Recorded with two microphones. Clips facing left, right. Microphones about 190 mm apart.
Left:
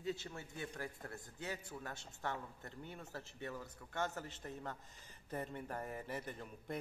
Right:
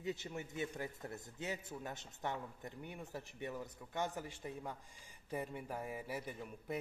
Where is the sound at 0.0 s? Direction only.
15° right (ahead or behind).